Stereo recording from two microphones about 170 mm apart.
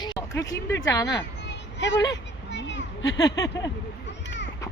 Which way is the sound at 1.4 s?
90° left.